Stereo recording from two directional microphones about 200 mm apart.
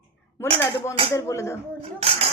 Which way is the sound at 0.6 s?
10° left (ahead or behind).